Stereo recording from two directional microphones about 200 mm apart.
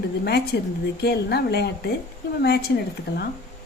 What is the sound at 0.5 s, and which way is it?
Speech, 60° left (ahead or behind).